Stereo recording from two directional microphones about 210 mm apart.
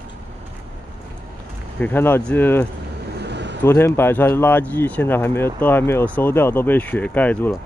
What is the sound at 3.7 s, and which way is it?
Speech, 10° left (ahead or behind).